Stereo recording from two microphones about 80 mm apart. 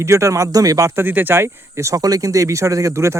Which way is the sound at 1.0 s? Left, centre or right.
Right.